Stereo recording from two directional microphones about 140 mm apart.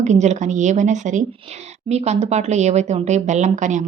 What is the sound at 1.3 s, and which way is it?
Speech, 50° right (ahead or behind).